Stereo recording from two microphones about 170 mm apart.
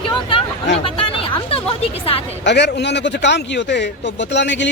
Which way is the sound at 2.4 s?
90° left.